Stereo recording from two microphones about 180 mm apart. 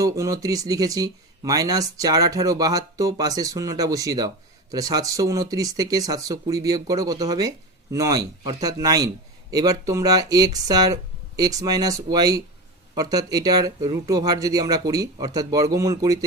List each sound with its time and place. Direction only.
0.0 s speech: 20° right (ahead or behind)